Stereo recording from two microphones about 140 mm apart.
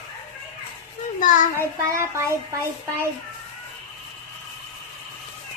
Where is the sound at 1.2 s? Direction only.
70° left (ahead or behind).